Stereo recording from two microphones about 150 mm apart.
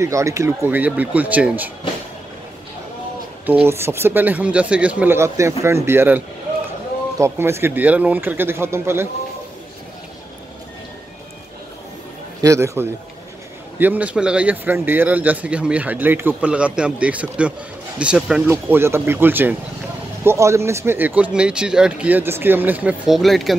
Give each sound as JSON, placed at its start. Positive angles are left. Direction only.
{"t": 0.0, "sound": "speech", "side_deg": -20}
{"t": 3.4, "sound": "speech", "side_deg": -15}
{"t": 12.4, "sound": "a man's voice", "side_deg": -20}